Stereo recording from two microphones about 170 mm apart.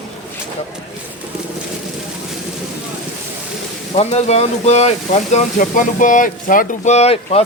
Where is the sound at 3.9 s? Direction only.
40° left (ahead or behind).